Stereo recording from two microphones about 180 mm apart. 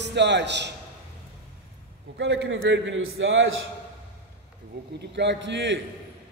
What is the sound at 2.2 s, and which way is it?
A man's voice, 75° right (ahead or behind).